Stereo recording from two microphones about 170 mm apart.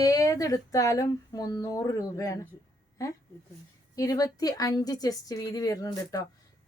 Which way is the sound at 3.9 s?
20° left (ahead or behind).